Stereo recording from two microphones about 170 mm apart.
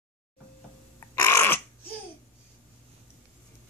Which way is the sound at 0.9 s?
15° left (ahead or behind).